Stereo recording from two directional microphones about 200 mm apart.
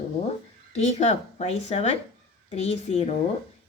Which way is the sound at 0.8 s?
35° left (ahead or behind).